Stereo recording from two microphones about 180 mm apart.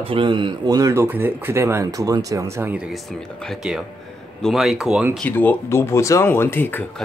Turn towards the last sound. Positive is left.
turn(degrees=10)  # may be behind; listen again after turning